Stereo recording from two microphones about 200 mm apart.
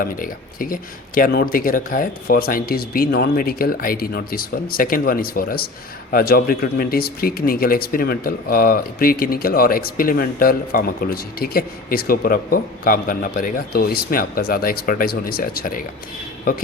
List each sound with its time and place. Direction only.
0.0 s speech: 45° left (ahead or behind)